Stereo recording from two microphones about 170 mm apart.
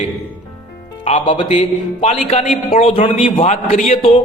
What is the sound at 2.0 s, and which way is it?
A man's voice, 40° left (ahead or behind).